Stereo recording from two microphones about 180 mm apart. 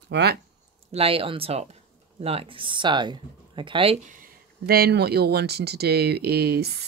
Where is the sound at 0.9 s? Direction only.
30° right (ahead or behind).